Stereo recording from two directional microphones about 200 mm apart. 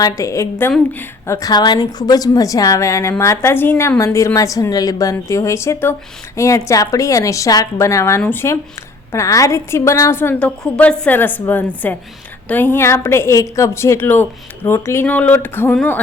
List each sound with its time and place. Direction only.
0.0 s a woman's voice: 15° left (ahead or behind)